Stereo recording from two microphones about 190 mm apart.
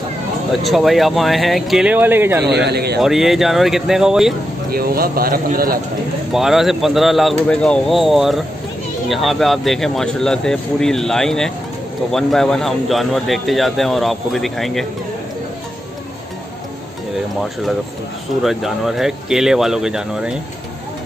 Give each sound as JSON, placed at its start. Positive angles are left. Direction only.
{"t": 0.5, "sound": "a man's voice", "side_deg": 0}
{"t": 2.4, "sound": "speech", "side_deg": -60}
{"t": 3.0, "sound": "a man's voice", "side_deg": 0}
{"t": 4.6, "sound": "a man's voice", "side_deg": -50}
{"t": 6.3, "sound": "a man's voice", "side_deg": 0}
{"t": 18.4, "sound": "a man's voice", "side_deg": 0}